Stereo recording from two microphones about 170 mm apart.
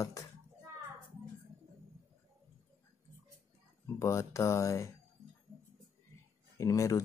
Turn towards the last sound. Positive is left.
turn(degrees=20)  # may be behind; listen again after turning